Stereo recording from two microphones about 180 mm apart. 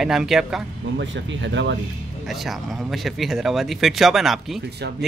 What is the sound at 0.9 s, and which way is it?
Speech, 85° right.